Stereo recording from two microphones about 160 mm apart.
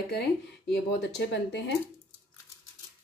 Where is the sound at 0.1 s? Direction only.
90° left.